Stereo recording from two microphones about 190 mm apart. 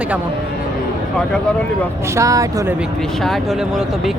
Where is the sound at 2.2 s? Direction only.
15° right (ahead or behind).